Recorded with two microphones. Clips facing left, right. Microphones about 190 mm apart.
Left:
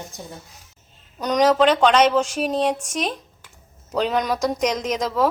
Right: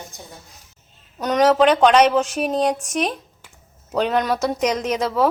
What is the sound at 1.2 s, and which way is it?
A woman's voice, 5° right (ahead or behind).